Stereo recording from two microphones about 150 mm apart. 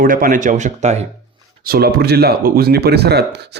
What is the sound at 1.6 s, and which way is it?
Speech, 85° right.